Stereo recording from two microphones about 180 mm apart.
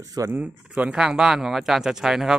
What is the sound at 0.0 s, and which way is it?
Speech, 20° right (ahead or behind).